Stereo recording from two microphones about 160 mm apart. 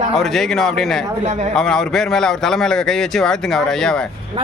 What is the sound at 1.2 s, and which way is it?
Speech, 45° right (ahead or behind).